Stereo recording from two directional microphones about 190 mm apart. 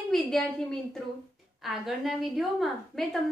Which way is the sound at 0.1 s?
Centre (ahead or behind).